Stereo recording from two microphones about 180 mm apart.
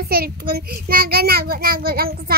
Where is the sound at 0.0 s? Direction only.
60° right (ahead or behind).